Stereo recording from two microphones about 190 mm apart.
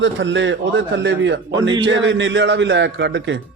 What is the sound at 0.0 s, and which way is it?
A man's voice, 75° right (ahead or behind).